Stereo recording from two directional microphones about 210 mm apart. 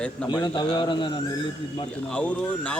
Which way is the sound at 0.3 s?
20° left (ahead or behind).